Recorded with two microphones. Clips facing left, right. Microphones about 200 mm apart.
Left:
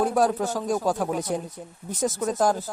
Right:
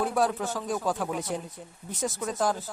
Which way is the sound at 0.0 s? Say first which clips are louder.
Left 4 dB; 40° left (ahead or behind).